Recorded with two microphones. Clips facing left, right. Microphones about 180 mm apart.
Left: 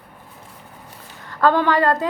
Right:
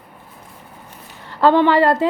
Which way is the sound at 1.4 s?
20° right (ahead or behind).